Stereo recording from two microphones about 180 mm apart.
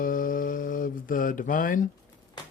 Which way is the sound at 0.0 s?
50° left (ahead or behind).